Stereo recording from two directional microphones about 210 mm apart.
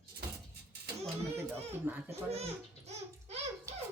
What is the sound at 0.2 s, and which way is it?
Music, 45° right (ahead or behind).